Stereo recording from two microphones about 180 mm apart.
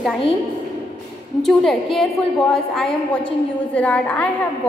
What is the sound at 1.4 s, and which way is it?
A woman's voice, centre (ahead or behind).